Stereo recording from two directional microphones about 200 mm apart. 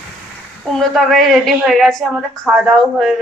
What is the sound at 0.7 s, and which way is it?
A woman's voice, centre (ahead or behind).